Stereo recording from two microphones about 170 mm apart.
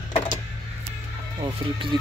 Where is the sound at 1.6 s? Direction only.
25° right (ahead or behind).